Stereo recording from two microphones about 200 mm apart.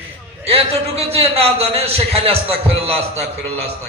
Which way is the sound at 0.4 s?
30° right (ahead or behind).